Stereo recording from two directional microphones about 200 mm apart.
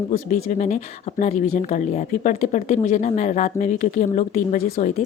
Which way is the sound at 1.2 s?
35° left (ahead or behind).